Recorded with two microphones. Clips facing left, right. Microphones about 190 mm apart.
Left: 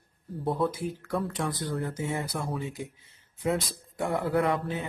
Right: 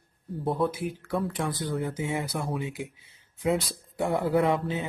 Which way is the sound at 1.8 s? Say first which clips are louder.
Right 2 dB; 15° right (ahead or behind).